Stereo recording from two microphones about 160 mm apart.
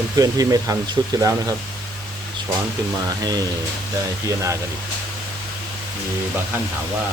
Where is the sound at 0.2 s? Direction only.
20° right (ahead or behind).